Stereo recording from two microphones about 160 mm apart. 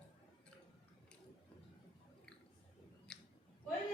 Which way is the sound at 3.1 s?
5° left (ahead or behind).